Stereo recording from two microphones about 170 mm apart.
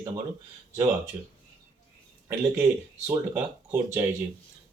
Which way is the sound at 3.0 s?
15° right (ahead or behind).